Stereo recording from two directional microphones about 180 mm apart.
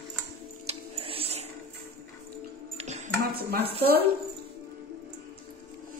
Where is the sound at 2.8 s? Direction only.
40° right (ahead or behind).